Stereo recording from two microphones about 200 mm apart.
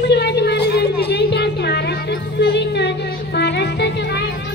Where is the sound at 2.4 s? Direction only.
55° left (ahead or behind).